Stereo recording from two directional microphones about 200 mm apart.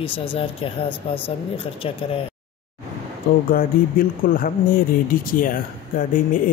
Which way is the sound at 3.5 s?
45° left (ahead or behind).